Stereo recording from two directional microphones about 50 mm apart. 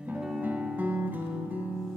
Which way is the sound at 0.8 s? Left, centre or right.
Right.